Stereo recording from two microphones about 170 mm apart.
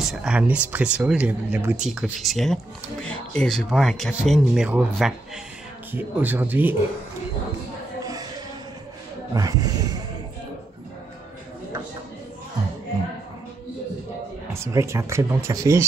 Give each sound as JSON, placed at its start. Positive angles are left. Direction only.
{"t": 0.0, "sound": "speech", "side_deg": -5}
{"t": 8.0, "sound": "a sound", "side_deg": -20}
{"t": 9.3, "sound": "speech", "side_deg": -20}
{"t": 14.5, "sound": "speech", "side_deg": -15}